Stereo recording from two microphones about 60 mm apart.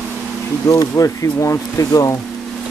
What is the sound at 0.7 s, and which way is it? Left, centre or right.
Speech, left.